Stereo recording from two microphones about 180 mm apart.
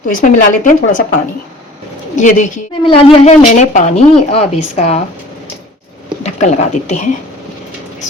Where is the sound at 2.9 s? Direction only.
30° left (ahead or behind).